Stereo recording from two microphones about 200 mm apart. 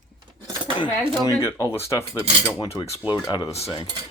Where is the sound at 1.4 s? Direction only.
15° left (ahead or behind).